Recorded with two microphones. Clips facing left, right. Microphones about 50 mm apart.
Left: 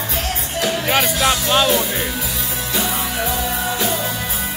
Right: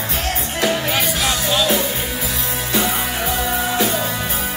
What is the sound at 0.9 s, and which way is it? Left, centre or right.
Music, left.